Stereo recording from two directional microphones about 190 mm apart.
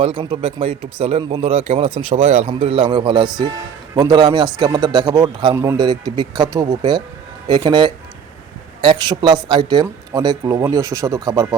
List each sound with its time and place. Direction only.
0.2 s a man's voice: 30° right (ahead or behind)